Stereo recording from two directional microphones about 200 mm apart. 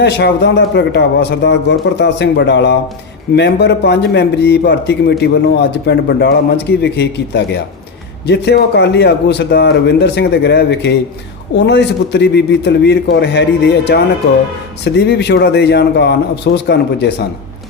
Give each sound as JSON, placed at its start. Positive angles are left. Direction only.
{"t": 0.0, "sound": "a man's voice", "side_deg": 60}